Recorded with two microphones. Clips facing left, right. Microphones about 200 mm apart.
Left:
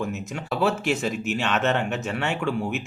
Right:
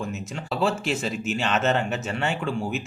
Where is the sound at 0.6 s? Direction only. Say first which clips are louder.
Left 2 dB; centre (ahead or behind).